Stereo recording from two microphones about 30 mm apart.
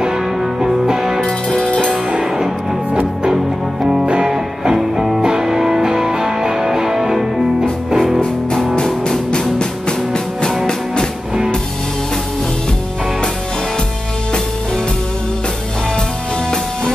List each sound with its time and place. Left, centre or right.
0.6 s music: centre
1.6 s music: left
4.0 s music: right
4.3 s music: centre
8.7 s music: left